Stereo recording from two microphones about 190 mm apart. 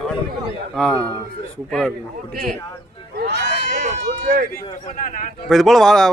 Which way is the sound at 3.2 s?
65° right (ahead or behind).